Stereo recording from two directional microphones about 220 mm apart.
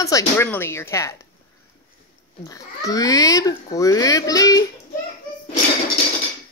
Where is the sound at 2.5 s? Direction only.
15° left (ahead or behind).